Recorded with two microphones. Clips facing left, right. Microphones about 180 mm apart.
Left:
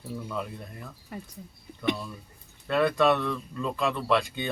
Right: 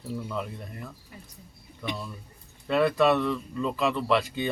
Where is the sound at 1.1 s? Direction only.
60° left (ahead or behind).